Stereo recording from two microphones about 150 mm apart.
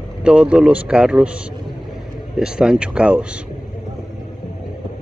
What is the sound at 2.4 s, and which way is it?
Speech, 5° right (ahead or behind).